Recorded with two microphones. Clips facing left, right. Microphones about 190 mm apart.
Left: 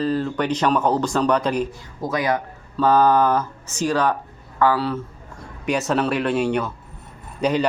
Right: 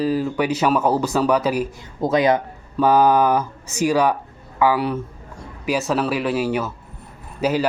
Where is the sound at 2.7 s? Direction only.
10° right (ahead or behind).